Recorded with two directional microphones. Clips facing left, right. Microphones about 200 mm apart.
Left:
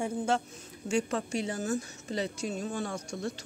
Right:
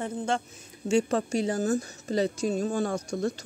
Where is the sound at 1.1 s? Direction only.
40° right (ahead or behind).